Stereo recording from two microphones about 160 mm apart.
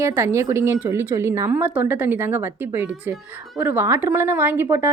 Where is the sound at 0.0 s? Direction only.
15° right (ahead or behind).